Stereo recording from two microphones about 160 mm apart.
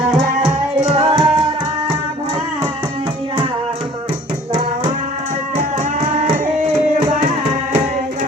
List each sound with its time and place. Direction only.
0.9 s music: 35° right (ahead or behind)